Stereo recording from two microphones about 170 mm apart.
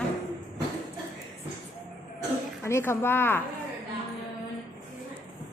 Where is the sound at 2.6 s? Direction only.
15° left (ahead or behind).